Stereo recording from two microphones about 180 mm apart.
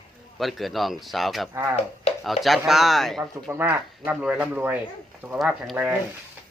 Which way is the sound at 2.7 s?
Centre (ahead or behind).